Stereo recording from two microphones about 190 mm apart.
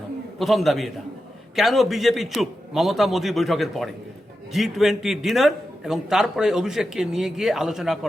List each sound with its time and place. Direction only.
0.3 s a man's voice: centre (ahead or behind)